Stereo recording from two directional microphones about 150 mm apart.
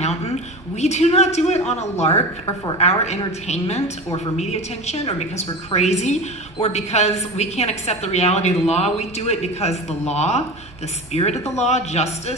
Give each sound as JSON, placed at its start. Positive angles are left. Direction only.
{"t": 0.7, "sound": "a woman's voice", "side_deg": 50}